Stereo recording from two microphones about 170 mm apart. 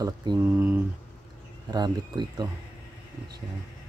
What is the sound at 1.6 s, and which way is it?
Speech, 25° right (ahead or behind).